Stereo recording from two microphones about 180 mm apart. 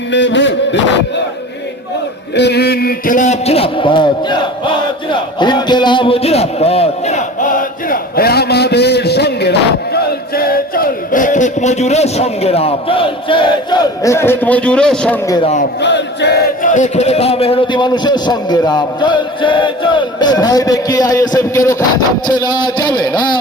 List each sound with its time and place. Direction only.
0.1 s music: 85° left
2.3 s a man's voice: 70° left (ahead or behind); by 4.7 s 25° left (ahead or behind)
5.4 s a sound: 25° left (ahead or behind); by 15.2 s 5° left (ahead or behind)
15.8 s chant: 75° left (ahead or behind)
16.6 s a man's voice: 45° left (ahead or behind); by 23.3 s 25° left (ahead or behind)